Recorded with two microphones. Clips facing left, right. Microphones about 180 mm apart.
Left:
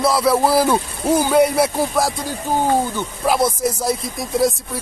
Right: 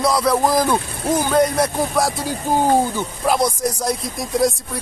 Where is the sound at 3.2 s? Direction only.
5° left (ahead or behind).